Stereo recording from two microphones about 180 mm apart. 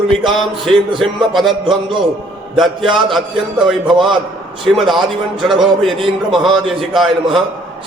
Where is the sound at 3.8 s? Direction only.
25° right (ahead or behind).